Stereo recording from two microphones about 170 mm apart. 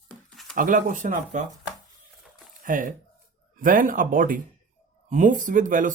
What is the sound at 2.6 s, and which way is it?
Speech, 50° right (ahead or behind).